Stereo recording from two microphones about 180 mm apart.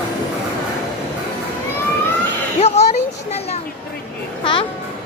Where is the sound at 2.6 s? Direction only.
35° left (ahead or behind).